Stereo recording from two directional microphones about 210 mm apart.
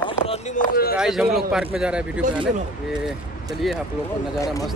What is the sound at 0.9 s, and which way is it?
Speech, 5° right (ahead or behind).